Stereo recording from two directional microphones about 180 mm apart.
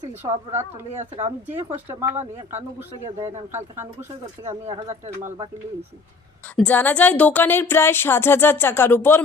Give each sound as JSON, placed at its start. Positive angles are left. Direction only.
{"t": 0.2, "sound": "speech", "side_deg": -20}
{"t": 1.5, "sound": "speech", "side_deg": -15}
{"t": 4.4, "sound": "speech", "side_deg": -15}
{"t": 6.6, "sound": "speech", "side_deg": 10}